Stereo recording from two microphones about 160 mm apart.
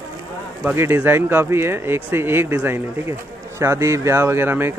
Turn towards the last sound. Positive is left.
turn(degrees=-15)  # may be behind; listen again after turning